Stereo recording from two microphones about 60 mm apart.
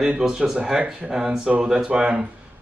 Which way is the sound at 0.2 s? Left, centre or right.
Centre.